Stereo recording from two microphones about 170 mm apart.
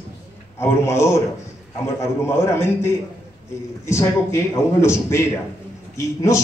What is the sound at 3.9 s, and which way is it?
A man's voice, 15° left (ahead or behind).